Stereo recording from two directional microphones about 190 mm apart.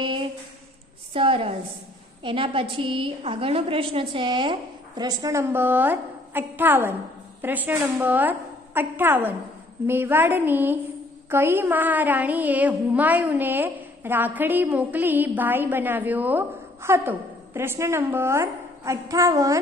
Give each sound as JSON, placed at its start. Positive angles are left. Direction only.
{"t": 0.0, "sound": "a sound", "side_deg": -25}
{"t": 1.1, "sound": "a woman's voice", "side_deg": -30}
{"t": 7.4, "sound": "music", "side_deg": -10}